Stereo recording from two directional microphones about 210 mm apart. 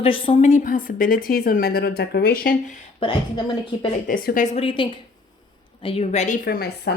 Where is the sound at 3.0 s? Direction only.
25° left (ahead or behind).